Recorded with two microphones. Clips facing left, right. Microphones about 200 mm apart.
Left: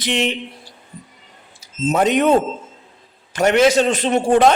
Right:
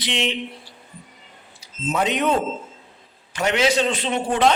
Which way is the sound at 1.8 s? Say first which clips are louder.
Left 6 dB; 45° left (ahead or behind).